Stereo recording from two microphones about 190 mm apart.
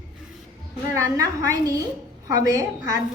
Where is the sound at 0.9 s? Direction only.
15° right (ahead or behind).